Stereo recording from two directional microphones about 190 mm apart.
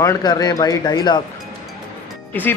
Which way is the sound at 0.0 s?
20° left (ahead or behind).